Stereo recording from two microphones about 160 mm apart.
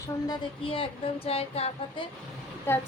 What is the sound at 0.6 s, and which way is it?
Speech, 35° left (ahead or behind).